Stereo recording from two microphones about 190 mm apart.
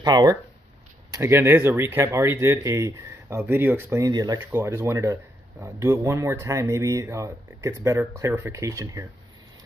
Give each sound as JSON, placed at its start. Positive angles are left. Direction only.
{"t": 0.0, "sound": "speech", "side_deg": -20}